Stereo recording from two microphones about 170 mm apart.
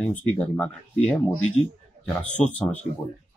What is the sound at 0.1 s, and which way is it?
Speech, 10° left (ahead or behind).